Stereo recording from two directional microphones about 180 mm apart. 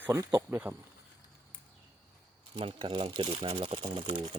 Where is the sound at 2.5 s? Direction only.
30° right (ahead or behind).